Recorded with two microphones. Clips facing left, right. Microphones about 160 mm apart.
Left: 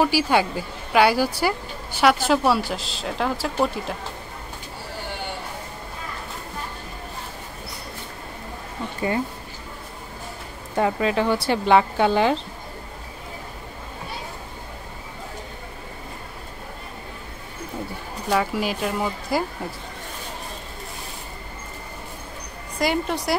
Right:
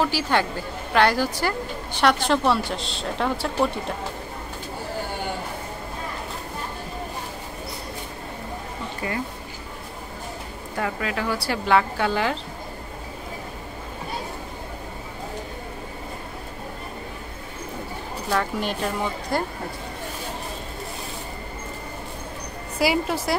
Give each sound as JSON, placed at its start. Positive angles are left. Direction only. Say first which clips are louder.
{"t": 0.0, "sound": "a woman's voice", "louder": "left 3 dB", "side_deg": 10}
{"t": 9.0, "sound": "speech", "louder": "left 5 dB", "side_deg": 30}
{"t": 10.8, "sound": "speech", "louder": "left 6 dB", "side_deg": 25}
{"t": 18.3, "sound": "a woman's voice", "louder": "left 2 dB", "side_deg": 5}
{"t": 22.8, "sound": "a woman's voice", "louder": "right 1 dB", "side_deg": -5}